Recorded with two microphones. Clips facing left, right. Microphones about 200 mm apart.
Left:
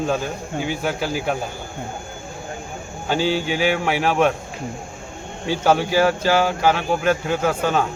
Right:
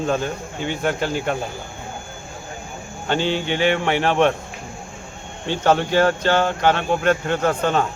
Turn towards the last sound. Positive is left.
turn(degrees=5)  # may be behind; listen again after turning